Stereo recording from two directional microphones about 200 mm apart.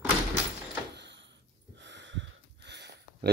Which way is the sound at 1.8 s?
65° right (ahead or behind).